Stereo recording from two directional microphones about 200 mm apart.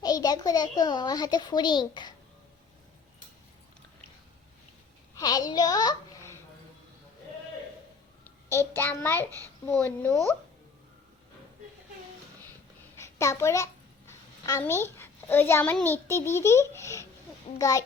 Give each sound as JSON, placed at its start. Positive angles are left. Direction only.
{"t": 0.0, "sound": "a child's voice", "side_deg": 20}
{"t": 5.1, "sound": "a woman's voice", "side_deg": 20}
{"t": 8.2, "sound": "a child's voice", "side_deg": 10}
{"t": 13.0, "sound": "a child's voice", "side_deg": 15}